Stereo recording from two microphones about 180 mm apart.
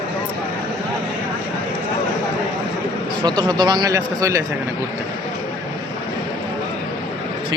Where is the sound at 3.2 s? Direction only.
25° right (ahead or behind).